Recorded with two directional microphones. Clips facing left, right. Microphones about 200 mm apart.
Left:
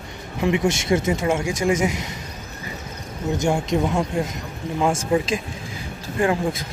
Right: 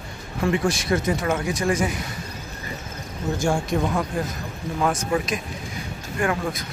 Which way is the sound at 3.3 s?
20° left (ahead or behind).